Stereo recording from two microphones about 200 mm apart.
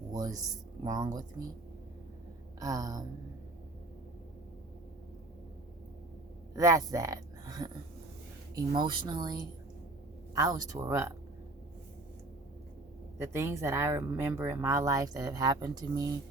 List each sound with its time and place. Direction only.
0.1 s speech: 20° right (ahead or behind)
2.6 s speech: 15° right (ahead or behind)
6.6 s speech: 15° right (ahead or behind)
8.7 s speech: 25° right (ahead or behind)
13.1 s speech: 15° right (ahead or behind)